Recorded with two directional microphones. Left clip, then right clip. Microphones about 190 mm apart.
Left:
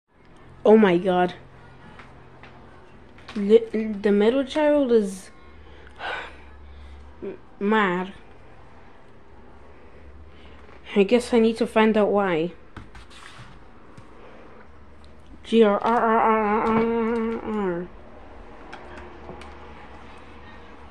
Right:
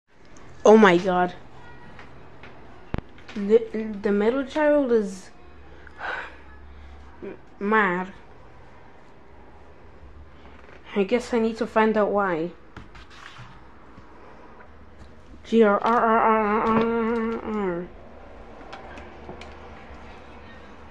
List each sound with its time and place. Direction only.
0.6 s speech: 10° left (ahead or behind)
3.4 s speech: 20° left (ahead or behind)
5.9 s gasp: 20° left (ahead or behind)
7.6 s speech: 15° left (ahead or behind)
10.9 s speech: 30° left (ahead or behind)
15.4 s speech: 10° left (ahead or behind)
17.4 s a sound: 15° left (ahead or behind)